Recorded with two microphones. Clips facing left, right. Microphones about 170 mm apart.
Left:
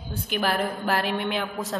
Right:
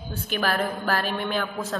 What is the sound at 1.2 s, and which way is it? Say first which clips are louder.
Mantra: even; 20° left (ahead or behind).